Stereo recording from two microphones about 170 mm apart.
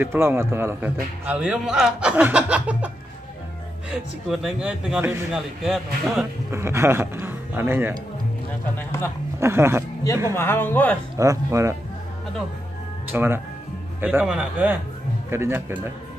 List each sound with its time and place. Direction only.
0.0 s a man's voice: 15° right (ahead or behind)
3.9 s speech: 5° right (ahead or behind)
6.5 s a man's voice: 15° right (ahead or behind)
8.7 s speech: 15° left (ahead or behind)
9.4 s a man's voice: 15° right (ahead or behind)
10.3 s speech: 15° left (ahead or behind)
11.1 s a man's voice: 20° right (ahead or behind)
13.1 s a man's voice: 10° right (ahead or behind)